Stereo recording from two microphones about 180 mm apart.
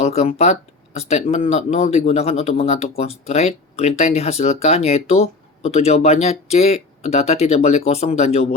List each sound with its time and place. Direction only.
0.0 s speech: 35° left (ahead or behind)